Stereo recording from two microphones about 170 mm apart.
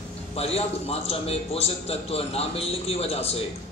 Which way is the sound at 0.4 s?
35° left (ahead or behind).